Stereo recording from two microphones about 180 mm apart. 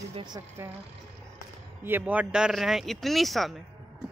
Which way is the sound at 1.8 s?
10° right (ahead or behind).